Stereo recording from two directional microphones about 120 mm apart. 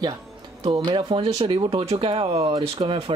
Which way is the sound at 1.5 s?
60° right (ahead or behind).